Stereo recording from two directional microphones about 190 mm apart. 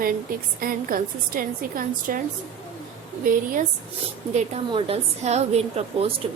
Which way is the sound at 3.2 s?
45° right (ahead or behind).